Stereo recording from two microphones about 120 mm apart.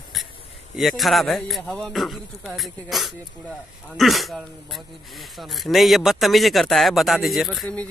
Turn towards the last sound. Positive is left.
turn(degrees=0)  # may be behind; listen again after turning